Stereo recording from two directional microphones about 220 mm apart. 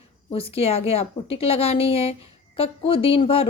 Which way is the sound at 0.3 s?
25° left (ahead or behind).